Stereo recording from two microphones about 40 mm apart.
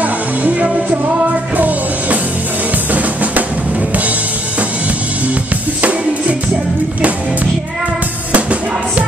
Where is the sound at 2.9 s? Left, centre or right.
Right.